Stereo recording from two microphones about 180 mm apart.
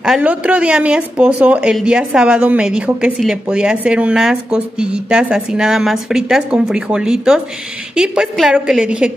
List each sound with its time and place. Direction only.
0.0 s a woman's voice: 5° right (ahead or behind)